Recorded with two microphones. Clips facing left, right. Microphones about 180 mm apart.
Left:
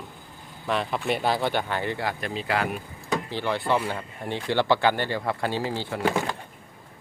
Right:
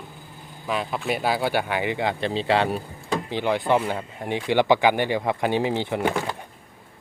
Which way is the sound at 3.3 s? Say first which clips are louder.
Right 5 dB; 15° right (ahead or behind).